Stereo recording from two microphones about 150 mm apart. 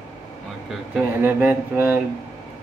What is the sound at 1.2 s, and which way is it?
Speech, 10° right (ahead or behind).